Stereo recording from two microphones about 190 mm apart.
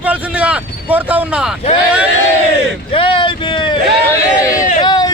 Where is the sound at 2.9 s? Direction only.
25° left (ahead or behind).